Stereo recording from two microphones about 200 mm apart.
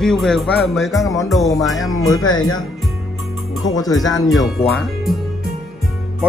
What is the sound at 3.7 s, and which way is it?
Speech, 20° left (ahead or behind).